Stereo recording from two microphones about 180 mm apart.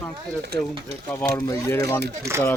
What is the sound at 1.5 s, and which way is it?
Speech, 20° left (ahead or behind).